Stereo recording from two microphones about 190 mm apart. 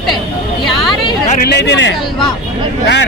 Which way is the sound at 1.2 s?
55° left (ahead or behind).